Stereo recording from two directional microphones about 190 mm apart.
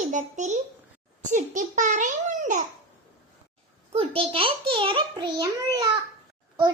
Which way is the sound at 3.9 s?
30° right (ahead or behind).